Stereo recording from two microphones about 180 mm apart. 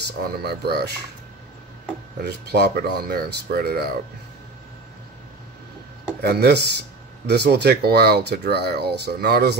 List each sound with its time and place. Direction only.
0.2 s speech: 60° right (ahead or behind)
2.2 s speech: 65° right (ahead or behind)
6.2 s speech: 65° right (ahead or behind)